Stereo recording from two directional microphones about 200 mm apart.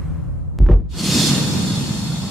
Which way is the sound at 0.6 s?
Centre (ahead or behind).